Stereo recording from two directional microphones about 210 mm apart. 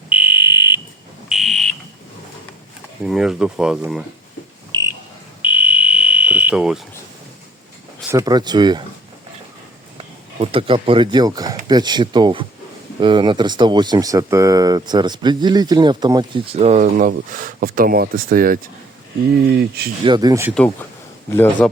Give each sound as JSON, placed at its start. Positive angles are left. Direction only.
{"t": 0.1, "sound": "fire alarm", "side_deg": -10}
{"t": 3.0, "sound": "speech", "side_deg": 0}
{"t": 4.7, "sound": "frog", "side_deg": -20}
{"t": 5.4, "sound": "fire alarm", "side_deg": -5}
{"t": 8.1, "sound": "speech", "side_deg": -20}
{"t": 10.3, "sound": "speech", "side_deg": -25}
{"t": 20.1, "sound": "speech", "side_deg": -20}
{"t": 21.2, "sound": "a man's voice", "side_deg": 10}